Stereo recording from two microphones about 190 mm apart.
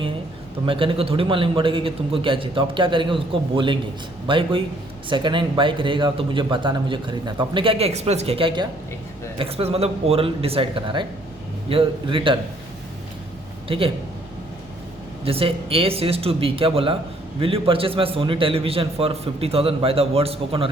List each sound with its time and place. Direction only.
0.6 s speech: 25° right (ahead or behind)
13.7 s a man's voice: 30° right (ahead or behind)
15.2 s speech: 30° right (ahead or behind)